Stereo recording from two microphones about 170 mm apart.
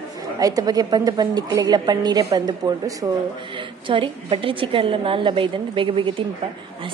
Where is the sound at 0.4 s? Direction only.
20° right (ahead or behind).